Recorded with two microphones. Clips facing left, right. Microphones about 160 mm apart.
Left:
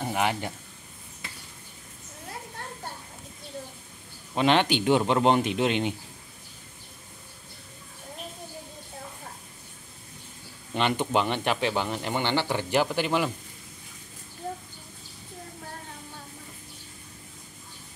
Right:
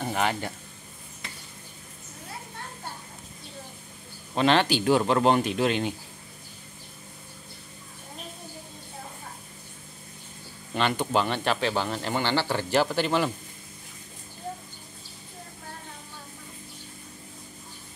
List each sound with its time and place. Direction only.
0.0 s a man's voice: 10° left (ahead or behind)
4.4 s a man's voice: 15° left (ahead or behind)
10.7 s a man's voice: 20° left (ahead or behind)